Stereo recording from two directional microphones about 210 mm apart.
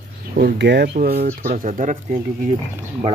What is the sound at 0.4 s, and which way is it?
Speech, 55° right (ahead or behind).